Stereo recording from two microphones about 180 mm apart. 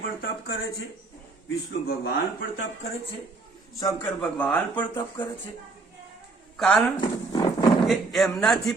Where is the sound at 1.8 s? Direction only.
60° left (ahead or behind).